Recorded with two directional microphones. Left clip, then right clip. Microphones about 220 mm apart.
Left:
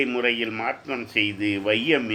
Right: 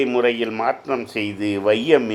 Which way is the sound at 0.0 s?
15° right (ahead or behind).